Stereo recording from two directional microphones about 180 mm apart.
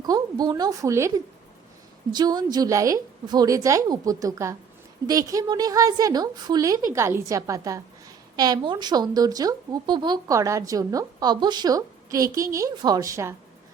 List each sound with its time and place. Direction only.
0.0 s a woman's voice: 20° right (ahead or behind)